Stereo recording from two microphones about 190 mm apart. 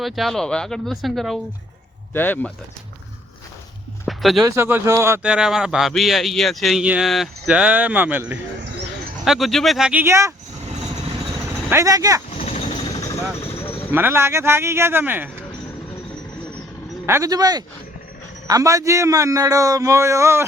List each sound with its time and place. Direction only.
0.0 s speech: centre (ahead or behind)
4.0 s a sound: centre (ahead or behind)
4.4 s speech: 15° right (ahead or behind)
11.7 s a man's voice: 15° right (ahead or behind)
12.4 s jackhammer: 30° left (ahead or behind)
13.9 s a man's voice: 10° right (ahead or behind)
17.1 s a man's voice: 15° right (ahead or behind)